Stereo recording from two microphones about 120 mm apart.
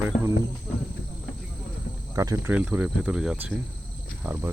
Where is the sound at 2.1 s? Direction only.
25° right (ahead or behind).